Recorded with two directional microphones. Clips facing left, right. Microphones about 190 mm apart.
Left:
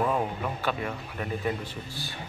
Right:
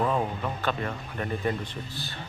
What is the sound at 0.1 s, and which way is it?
Speech, 10° left (ahead or behind).